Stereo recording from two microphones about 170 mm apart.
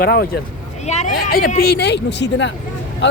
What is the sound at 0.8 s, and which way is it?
Speech, 45° left (ahead or behind).